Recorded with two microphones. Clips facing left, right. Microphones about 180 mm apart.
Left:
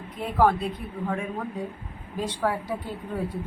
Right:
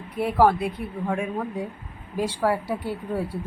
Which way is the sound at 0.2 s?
10° right (ahead or behind).